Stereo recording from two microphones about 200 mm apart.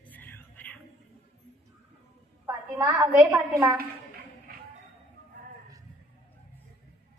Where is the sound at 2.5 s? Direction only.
15° right (ahead or behind).